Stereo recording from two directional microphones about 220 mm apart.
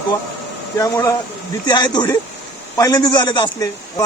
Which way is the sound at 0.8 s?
15° left (ahead or behind).